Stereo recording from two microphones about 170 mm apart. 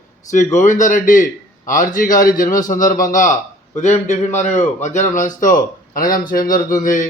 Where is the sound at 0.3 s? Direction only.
45° left (ahead or behind).